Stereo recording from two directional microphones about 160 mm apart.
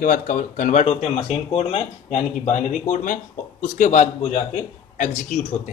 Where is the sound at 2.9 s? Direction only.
55° left (ahead or behind).